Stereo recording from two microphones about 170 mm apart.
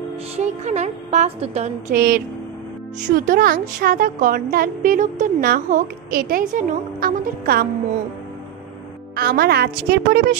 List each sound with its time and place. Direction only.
0.4 s a woman's voice: 40° right (ahead or behind)
1.9 s a woman's voice: 60° right (ahead or behind)
9.1 s a woman's voice: 65° right (ahead or behind)